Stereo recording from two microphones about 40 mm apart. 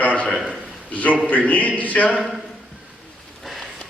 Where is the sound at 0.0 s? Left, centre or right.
Left.